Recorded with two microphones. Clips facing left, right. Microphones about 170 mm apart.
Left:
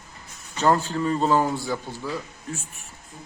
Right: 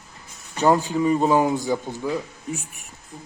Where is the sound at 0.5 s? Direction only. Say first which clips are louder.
Right 3 dB; 15° right (ahead or behind).